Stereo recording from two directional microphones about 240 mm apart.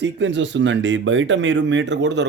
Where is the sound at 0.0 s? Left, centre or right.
Right.